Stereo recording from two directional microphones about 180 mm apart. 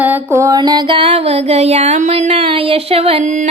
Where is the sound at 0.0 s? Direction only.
10° right (ahead or behind).